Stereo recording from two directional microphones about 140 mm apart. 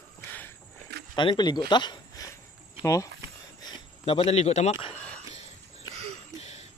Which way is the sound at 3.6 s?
45° left (ahead or behind).